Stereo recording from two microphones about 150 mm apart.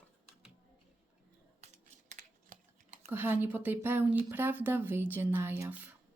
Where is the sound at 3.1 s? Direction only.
15° right (ahead or behind).